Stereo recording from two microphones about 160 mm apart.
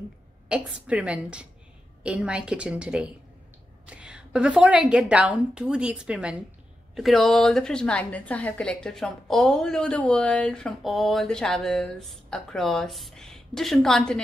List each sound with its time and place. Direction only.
0.5 s a woman's voice: 5° right (ahead or behind)